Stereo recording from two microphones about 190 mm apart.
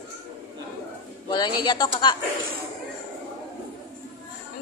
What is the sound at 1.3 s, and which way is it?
Speech, 25° left (ahead or behind).